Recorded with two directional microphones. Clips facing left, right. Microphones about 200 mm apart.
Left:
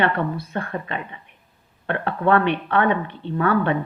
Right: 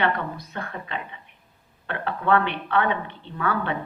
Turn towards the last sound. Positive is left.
turn(degrees=50)  # may be behind; listen again after turning